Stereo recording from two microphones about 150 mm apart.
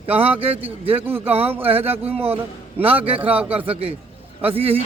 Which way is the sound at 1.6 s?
40° right (ahead or behind).